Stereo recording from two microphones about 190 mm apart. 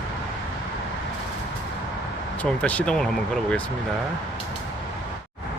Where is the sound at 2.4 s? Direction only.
5° left (ahead or behind).